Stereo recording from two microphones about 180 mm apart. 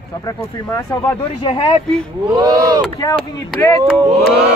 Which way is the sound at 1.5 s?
30° left (ahead or behind).